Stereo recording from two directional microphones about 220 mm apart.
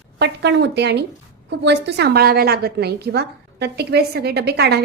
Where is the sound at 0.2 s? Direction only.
50° right (ahead or behind).